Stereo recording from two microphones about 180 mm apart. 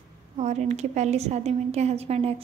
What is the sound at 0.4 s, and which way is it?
A woman's voice, 40° right (ahead or behind).